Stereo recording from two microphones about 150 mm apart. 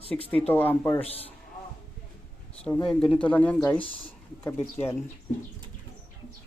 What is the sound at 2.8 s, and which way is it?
Speech, 5° left (ahead or behind).